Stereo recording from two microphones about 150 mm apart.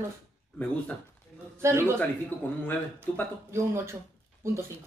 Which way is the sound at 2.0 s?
10° left (ahead or behind).